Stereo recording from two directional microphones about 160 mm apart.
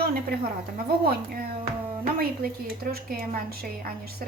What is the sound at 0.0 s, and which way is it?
A woman's voice, 75° right (ahead or behind).